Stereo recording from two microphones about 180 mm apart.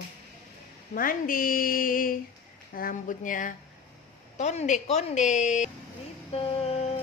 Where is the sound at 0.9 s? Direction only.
50° left (ahead or behind).